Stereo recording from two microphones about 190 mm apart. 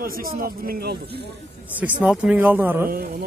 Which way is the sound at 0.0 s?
50° right (ahead or behind).